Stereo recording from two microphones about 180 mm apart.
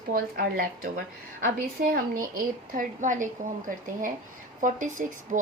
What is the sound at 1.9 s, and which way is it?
A woman's voice, 50° right (ahead or behind).